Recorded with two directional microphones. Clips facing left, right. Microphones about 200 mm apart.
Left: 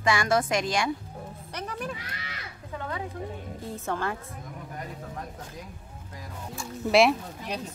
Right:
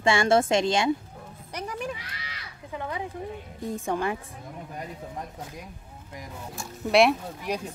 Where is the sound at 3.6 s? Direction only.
15° right (ahead or behind).